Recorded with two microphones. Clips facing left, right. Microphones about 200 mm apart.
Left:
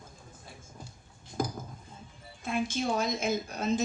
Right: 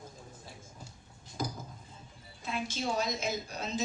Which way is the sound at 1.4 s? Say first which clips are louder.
Left 4 dB; 50° left (ahead or behind).